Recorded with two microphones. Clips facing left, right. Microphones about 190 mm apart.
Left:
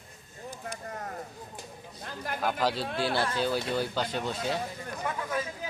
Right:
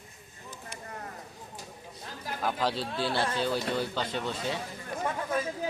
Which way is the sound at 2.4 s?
5° left (ahead or behind).